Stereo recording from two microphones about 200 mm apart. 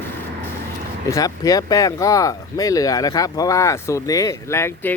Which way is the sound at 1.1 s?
15° left (ahead or behind).